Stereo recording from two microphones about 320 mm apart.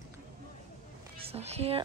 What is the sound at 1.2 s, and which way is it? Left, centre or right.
Speech, centre.